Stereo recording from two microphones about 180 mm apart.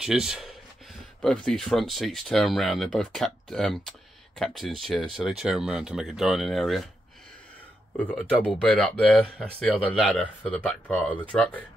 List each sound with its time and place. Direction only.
0.0 s speech: 5° right (ahead or behind)
8.0 s speech: 5° left (ahead or behind)